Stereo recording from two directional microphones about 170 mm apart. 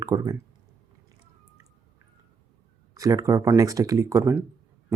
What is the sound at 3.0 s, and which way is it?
Speech, 20° right (ahead or behind).